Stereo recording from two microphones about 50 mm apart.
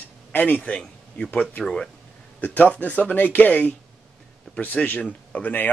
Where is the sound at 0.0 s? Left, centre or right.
Left.